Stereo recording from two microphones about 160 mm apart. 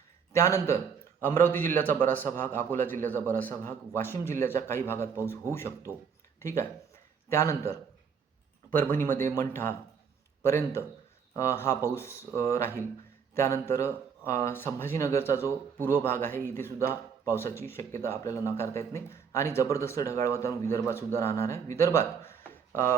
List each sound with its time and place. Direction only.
0.3 s speech: 20° left (ahead or behind)